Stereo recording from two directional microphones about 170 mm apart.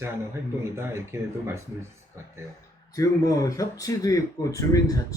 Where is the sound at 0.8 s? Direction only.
15° right (ahead or behind).